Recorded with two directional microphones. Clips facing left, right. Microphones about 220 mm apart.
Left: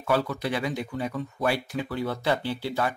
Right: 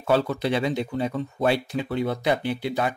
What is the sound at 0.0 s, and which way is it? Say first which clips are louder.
Speech: right 4 dB; 25° right (ahead or behind).